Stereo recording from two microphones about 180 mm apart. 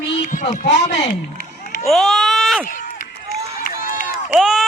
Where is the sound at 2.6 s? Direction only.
50° left (ahead or behind).